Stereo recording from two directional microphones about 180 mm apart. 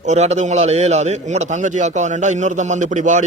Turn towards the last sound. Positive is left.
turn(degrees=-45)  # may be behind; listen again after turning